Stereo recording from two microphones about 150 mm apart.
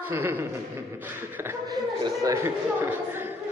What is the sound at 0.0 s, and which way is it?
A man's voice, 15° right (ahead or behind).